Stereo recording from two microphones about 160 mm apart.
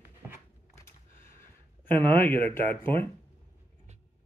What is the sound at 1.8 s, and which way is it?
Speech, 10° left (ahead or behind).